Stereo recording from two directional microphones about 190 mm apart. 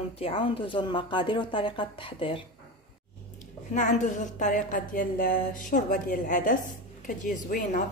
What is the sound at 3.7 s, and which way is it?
A woman's voice, 40° left (ahead or behind).